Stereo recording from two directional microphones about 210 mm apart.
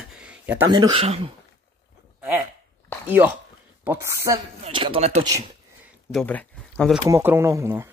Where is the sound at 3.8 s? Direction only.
15° right (ahead or behind); by 5.3 s 30° right (ahead or behind).